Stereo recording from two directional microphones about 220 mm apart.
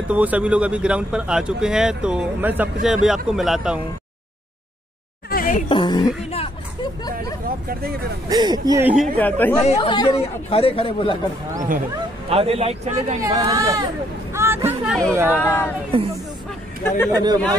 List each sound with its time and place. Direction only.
0.1 s speech: 5° right (ahead or behind)
5.3 s a sound: 40° left (ahead or behind)
5.7 s a sound: 20° left (ahead or behind)
7.4 s speech: 45° right (ahead or behind)
8.3 s speech: 20° right (ahead or behind)
8.9 s speech: 5° left (ahead or behind)
9.6 s speech: 30° left (ahead or behind)
12.3 s a man's voice: 25° right (ahead or behind)
13.2 s speech: 15° right (ahead or behind)
15.9 s a man's voice: 25° right (ahead or behind)
16.8 s speech: 10° left (ahead or behind)
17.1 s speech: 20° right (ahead or behind)